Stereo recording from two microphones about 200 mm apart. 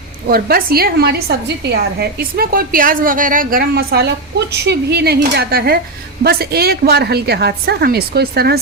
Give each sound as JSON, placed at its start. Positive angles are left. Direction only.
{"t": 0.3, "sound": "a woman's voice", "side_deg": -50}